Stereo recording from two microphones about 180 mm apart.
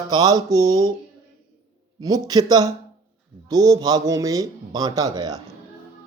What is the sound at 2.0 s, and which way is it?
Speech, 20° right (ahead or behind).